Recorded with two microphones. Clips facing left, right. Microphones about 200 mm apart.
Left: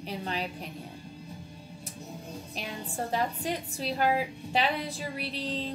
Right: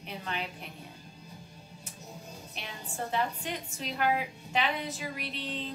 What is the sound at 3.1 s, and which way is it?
A woman's voice, 35° left (ahead or behind).